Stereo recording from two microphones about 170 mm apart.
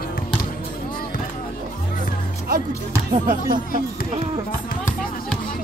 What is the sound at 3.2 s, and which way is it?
Speech, 50° right (ahead or behind).